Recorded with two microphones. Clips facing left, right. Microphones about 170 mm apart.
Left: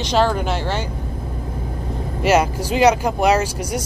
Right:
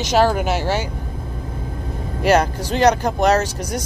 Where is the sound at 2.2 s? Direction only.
5° left (ahead or behind).